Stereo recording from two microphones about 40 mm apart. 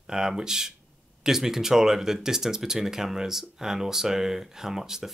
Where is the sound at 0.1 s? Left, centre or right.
Centre.